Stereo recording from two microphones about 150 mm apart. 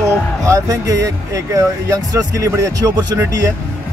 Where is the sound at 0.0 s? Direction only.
20° right (ahead or behind).